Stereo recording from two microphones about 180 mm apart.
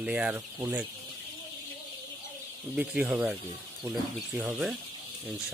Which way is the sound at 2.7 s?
5° right (ahead or behind).